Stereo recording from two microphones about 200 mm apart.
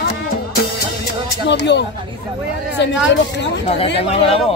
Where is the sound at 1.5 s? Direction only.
60° left (ahead or behind).